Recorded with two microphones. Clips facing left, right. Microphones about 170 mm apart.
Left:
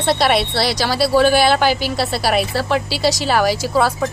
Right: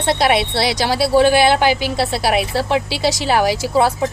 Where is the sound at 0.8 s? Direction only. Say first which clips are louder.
Right 1 dB; 20° right (ahead or behind).